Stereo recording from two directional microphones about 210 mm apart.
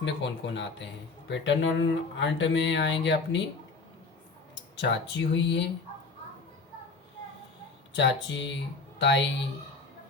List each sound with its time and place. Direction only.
0.0 s speech: 55° left (ahead or behind)
4.8 s speech: 55° left (ahead or behind)
7.9 s speech: 60° left (ahead or behind)